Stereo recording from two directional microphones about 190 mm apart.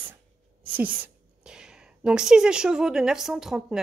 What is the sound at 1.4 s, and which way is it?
Speech, 5° right (ahead or behind).